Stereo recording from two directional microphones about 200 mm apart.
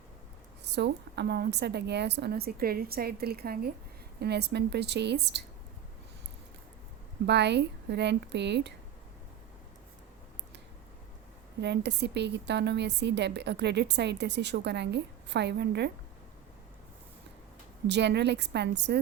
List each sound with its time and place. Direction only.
0.6 s a woman's voice: 60° right (ahead or behind)
7.3 s a woman's voice: 60° right (ahead or behind)
11.6 s a woman's voice: 60° right (ahead or behind)
17.8 s a woman's voice: 60° right (ahead or behind)